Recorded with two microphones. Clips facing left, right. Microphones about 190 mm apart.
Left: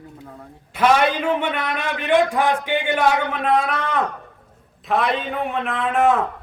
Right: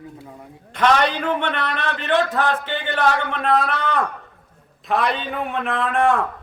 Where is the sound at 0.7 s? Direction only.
10° left (ahead or behind).